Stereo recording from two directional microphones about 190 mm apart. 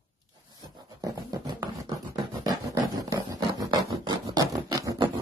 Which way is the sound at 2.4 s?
20° right (ahead or behind).